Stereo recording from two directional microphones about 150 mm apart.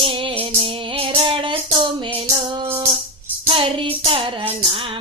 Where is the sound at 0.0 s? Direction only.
35° right (ahead or behind).